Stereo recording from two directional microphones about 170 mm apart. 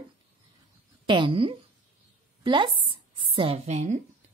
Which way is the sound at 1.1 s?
30° right (ahead or behind).